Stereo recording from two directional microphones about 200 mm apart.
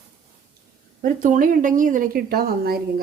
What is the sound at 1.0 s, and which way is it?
A woman's voice, 40° right (ahead or behind).